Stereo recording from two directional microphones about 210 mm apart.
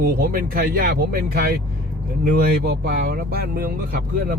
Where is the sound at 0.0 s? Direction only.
45° right (ahead or behind).